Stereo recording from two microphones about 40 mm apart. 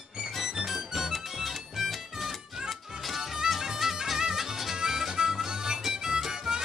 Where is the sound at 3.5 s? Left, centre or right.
Centre.